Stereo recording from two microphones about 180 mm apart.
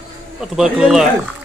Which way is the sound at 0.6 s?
Centre (ahead or behind).